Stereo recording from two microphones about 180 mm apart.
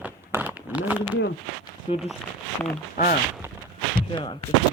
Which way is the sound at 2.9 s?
45° left (ahead or behind).